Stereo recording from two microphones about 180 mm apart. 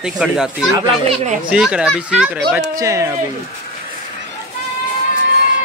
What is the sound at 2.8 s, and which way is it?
Speech, 15° right (ahead or behind).